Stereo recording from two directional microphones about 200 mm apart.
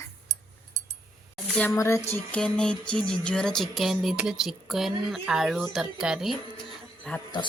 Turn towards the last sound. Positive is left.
turn(degrees=5)  # may be behind; listen again after turning